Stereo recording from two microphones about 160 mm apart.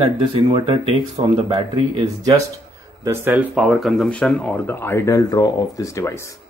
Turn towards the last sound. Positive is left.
turn(degrees=15)  # may be behind; listen again after turning